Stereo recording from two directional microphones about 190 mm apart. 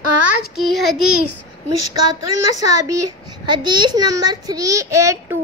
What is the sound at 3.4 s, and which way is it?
A child's voice, 25° right (ahead or behind).